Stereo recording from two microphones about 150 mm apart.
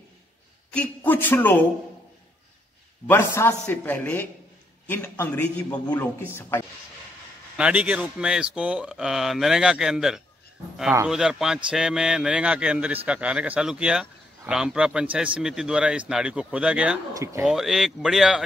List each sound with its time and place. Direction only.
0.7 s a man's voice: 10° left (ahead or behind)
3.1 s a man's voice: 15° left (ahead or behind)
7.5 s a man's voice: 10° right (ahead or behind)
17.1 s speech: 20° right (ahead or behind)
17.5 s a man's voice: centre (ahead or behind)